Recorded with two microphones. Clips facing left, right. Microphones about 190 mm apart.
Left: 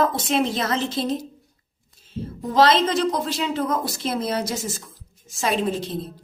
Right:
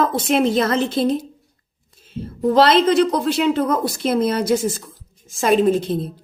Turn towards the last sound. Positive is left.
turn(degrees=-50)  # may be behind; listen again after turning